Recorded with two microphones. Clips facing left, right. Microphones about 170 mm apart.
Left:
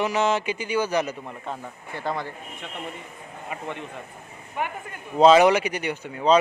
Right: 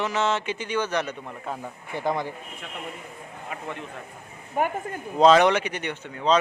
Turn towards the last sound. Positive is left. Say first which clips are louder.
# left 3 dB
turn(degrees=10)  # may be behind; listen again after turning